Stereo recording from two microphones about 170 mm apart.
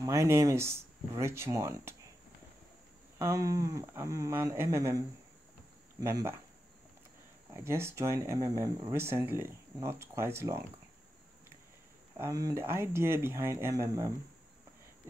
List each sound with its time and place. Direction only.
0.0 s speech: 20° right (ahead or behind)
3.2 s speech: 20° right (ahead or behind)
7.5 s speech: 15° right (ahead or behind)
12.2 s speech: 20° right (ahead or behind)